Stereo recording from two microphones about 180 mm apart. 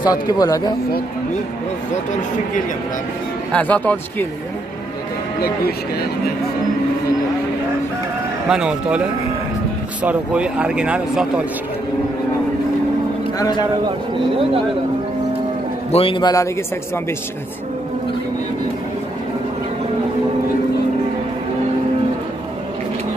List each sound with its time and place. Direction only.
0.0 s speech: 20° left (ahead or behind)
3.5 s speech: 10° left (ahead or behind)
8.5 s speech: 5° right (ahead or behind)
10.0 s speech: 5° right (ahead or behind)
14.3 s speech: 30° right (ahead or behind)
15.9 s speech: 30° left (ahead or behind)